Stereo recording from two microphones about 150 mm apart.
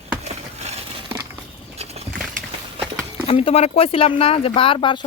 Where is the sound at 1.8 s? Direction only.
45° right (ahead or behind).